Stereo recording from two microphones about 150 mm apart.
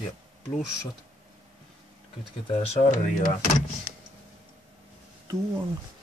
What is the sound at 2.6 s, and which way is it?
Speech, 55° left (ahead or behind).